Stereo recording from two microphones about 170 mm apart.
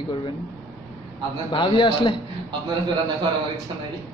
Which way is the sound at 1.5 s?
30° left (ahead or behind).